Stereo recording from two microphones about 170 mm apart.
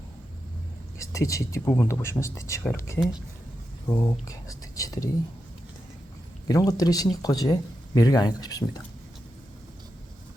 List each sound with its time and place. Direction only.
0.9 s speech: 20° left (ahead or behind)
6.5 s speech: 20° left (ahead or behind)